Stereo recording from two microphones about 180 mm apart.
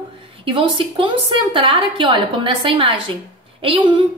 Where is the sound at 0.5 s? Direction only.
30° right (ahead or behind).